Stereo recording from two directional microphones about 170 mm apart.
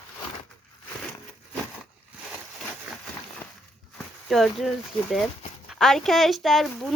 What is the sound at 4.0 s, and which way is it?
Speech, centre (ahead or behind).